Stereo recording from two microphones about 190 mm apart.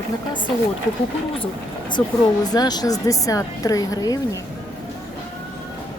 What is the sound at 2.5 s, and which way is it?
A woman's voice, 20° left (ahead or behind).